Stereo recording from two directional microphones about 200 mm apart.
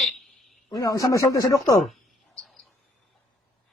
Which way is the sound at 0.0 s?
Centre (ahead or behind).